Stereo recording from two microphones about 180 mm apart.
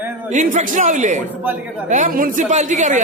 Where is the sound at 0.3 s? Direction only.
45° right (ahead or behind).